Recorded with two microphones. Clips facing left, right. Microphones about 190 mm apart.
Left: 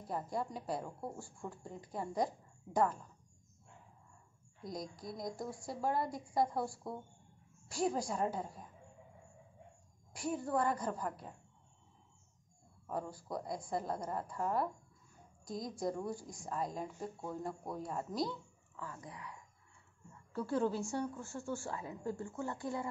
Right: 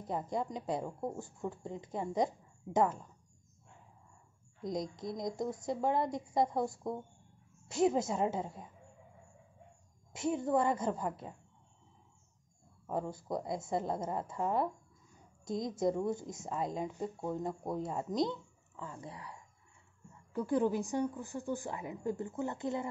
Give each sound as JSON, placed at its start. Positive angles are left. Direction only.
{"t": 0.0, "sound": "speech", "side_deg": -20}
{"t": 4.6, "sound": "speech", "side_deg": -20}
{"t": 10.1, "sound": "speech", "side_deg": -25}
{"t": 12.8, "sound": "a woman's voice", "side_deg": -25}
{"t": 20.3, "sound": "a woman's voice", "side_deg": -15}